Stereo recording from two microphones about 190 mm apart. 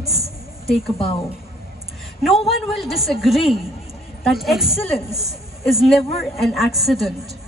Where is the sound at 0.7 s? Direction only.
30° left (ahead or behind).